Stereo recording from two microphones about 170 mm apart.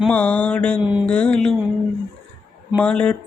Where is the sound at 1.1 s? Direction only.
5° left (ahead or behind).